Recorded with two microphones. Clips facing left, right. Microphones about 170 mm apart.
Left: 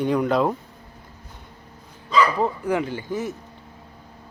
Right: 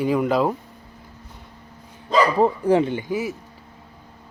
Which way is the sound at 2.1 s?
40° right (ahead or behind).